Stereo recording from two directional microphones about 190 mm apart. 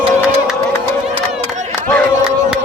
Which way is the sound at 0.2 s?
5° right (ahead or behind).